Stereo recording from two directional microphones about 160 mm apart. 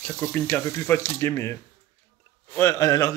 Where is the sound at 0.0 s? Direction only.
15° left (ahead or behind).